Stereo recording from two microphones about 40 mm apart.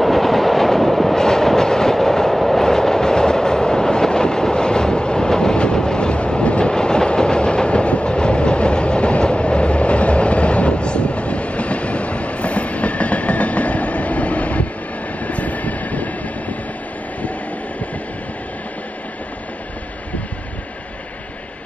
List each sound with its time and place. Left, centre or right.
0.0 s train: centre
1.1 s train: centre; by 14.7 s left
15.1 s vehicle: left